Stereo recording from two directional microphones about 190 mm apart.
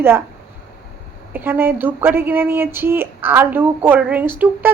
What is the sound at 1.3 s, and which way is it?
Speech, 10° right (ahead or behind).